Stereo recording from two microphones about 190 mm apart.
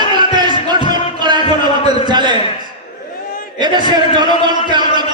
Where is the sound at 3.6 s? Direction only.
25° right (ahead or behind).